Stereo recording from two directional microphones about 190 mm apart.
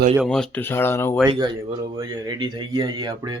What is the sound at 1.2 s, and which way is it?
Speech, 20° right (ahead or behind).